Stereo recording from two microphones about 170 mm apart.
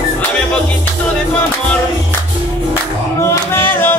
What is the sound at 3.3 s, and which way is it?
Music, 10° left (ahead or behind).